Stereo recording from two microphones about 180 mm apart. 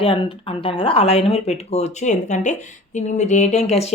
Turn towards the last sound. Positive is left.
turn(degrees=35)  # may be behind; listen again after turning